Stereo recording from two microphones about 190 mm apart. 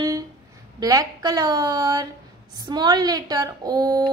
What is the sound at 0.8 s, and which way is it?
A woman's voice, 20° right (ahead or behind).